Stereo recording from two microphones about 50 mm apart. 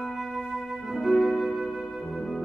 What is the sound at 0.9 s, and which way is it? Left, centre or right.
Music, centre.